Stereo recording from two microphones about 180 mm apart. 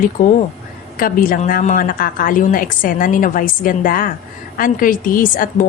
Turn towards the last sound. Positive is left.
turn(degrees=50)  # may be behind; listen again after turning